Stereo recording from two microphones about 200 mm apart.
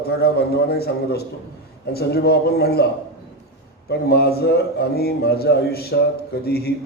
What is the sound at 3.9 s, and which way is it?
A man's voice, 55° left (ahead or behind).